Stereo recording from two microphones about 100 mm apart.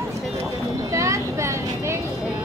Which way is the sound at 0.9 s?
30° right (ahead or behind).